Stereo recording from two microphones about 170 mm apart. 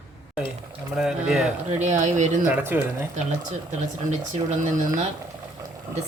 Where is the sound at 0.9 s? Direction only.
5° right (ahead or behind).